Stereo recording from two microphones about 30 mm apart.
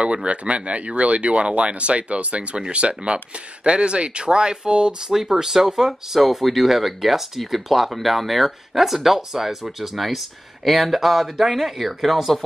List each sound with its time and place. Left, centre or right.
0.0 s speech: right
5.4 s speech: centre
6.2 s speech: centre